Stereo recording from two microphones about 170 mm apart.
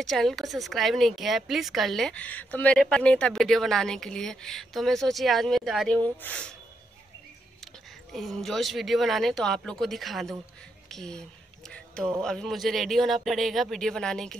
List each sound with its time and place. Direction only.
0.0 s speech: centre (ahead or behind)
7.6 s speech: centre (ahead or behind)